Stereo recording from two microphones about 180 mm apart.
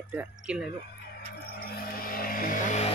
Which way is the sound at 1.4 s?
60° left (ahead or behind).